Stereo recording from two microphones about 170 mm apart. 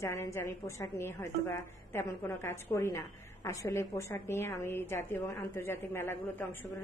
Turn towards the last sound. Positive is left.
turn(degrees=15)  # may be behind; listen again after turning